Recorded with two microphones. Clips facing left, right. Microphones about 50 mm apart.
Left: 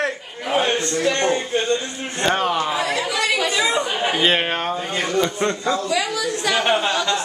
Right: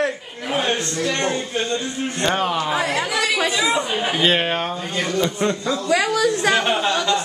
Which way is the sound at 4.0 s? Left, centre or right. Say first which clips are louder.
Left 1 dB; centre.